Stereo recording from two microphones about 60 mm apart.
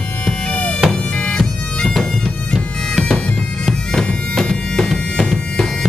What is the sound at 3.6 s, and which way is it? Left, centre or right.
Bagpipes, centre.